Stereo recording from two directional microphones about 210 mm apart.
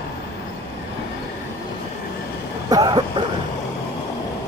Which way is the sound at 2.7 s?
20° right (ahead or behind).